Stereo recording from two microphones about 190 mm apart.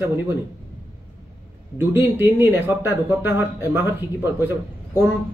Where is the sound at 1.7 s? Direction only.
10° right (ahead or behind).